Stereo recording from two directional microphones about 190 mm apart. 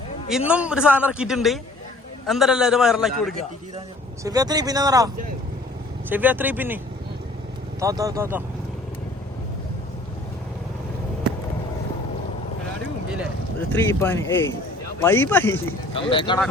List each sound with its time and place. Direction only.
0.3 s a man's voice: 5° right (ahead or behind)
4.2 s speech: 20° right (ahead or behind)
7.8 s speech: 15° right (ahead or behind)
13.7 s speech: 10° left (ahead or behind)
15.9 s speech: 30° left (ahead or behind)